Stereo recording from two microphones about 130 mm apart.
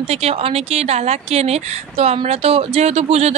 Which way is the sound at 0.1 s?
50° right (ahead or behind).